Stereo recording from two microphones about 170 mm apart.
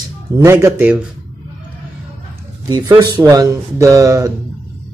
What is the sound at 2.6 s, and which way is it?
Speech, 20° right (ahead or behind).